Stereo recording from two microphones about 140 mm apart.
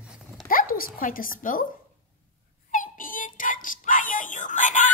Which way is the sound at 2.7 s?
75° left (ahead or behind).